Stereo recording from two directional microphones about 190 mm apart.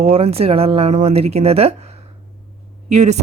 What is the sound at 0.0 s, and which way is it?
Speech, 30° right (ahead or behind).